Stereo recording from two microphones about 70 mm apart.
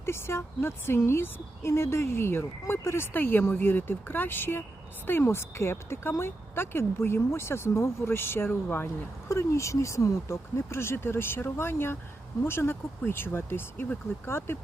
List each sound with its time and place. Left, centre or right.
0.0 s speech: left
9.3 s speech: left